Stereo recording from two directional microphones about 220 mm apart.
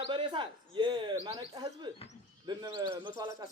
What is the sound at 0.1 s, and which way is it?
Speech, 20° right (ahead or behind).